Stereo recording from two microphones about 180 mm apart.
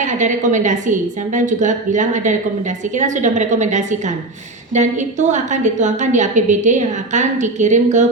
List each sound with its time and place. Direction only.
0.0 s a woman's voice: 45° right (ahead or behind)